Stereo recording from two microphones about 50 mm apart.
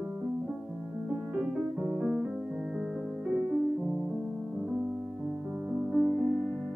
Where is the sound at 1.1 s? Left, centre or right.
Centre.